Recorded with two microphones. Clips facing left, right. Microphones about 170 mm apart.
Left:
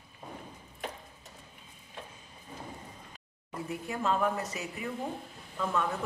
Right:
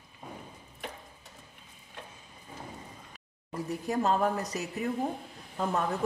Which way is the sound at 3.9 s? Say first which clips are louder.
Right 3 dB; 40° right (ahead or behind).